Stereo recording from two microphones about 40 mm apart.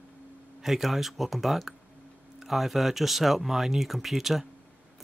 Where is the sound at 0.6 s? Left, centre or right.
Centre.